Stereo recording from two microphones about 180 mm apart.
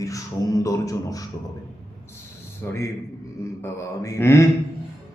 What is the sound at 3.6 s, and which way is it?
Speech, 15° left (ahead or behind).